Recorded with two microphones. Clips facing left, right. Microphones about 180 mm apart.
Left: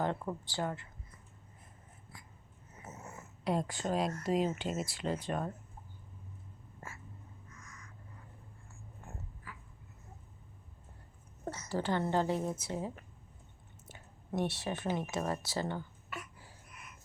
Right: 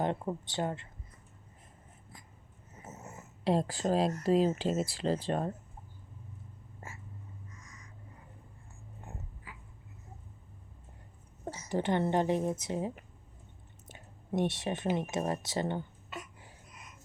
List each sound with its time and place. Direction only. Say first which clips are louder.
0.0 s speech: right 2 dB; 20° right (ahead or behind)
2.7 s a sound: right 1 dB; 20° right (ahead or behind)
4.2 s speech: right 5 dB; 35° right (ahead or behind)
7.5 s crow: even; 15° right (ahead or behind)
9.0 s dog: right 1 dB; 20° right (ahead or behind)
11.4 s speech: right 3 dB; 10° right (ahead or behind)
13.8 s a sound: right 2 dB; 20° right (ahead or behind)